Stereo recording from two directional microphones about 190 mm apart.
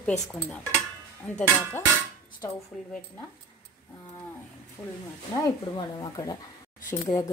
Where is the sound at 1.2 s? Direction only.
10° left (ahead or behind).